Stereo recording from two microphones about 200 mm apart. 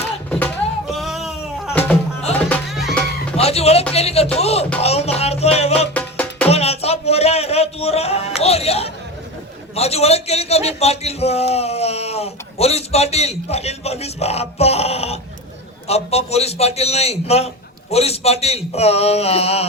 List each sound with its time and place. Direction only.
0.3 s music: 5° left (ahead or behind)
3.3 s music: 30° left (ahead or behind)
3.9 s a sound: 30° left (ahead or behind)
4.4 s music: 30° left (ahead or behind)
5.9 s music: 5° left (ahead or behind)
6.5 s music: 30° left (ahead or behind)
8.4 s a sound: 30° left (ahead or behind)
9.7 s a man's voice: 30° left (ahead or behind)